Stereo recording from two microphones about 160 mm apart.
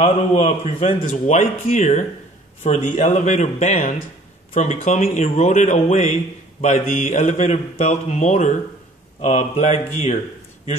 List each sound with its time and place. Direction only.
0.0 s a man's voice: 40° left (ahead or behind)